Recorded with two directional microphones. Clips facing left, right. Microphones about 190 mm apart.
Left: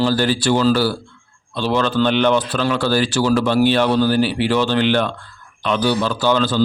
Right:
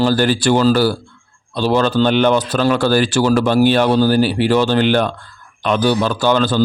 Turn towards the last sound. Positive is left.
turn(degrees=-50)  # may be behind; listen again after turning